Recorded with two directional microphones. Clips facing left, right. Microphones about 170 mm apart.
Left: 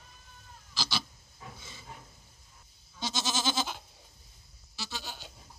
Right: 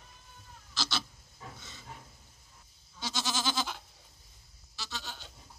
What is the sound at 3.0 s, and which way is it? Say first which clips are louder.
Goat: left 2 dB; 20° left (ahead or behind).